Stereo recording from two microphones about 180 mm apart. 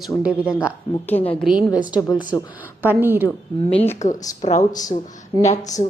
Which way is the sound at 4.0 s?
40° left (ahead or behind).